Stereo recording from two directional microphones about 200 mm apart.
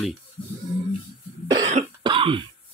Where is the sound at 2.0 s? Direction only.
25° right (ahead or behind).